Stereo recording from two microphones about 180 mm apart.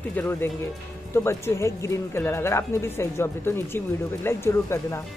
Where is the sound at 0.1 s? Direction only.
10° left (ahead or behind).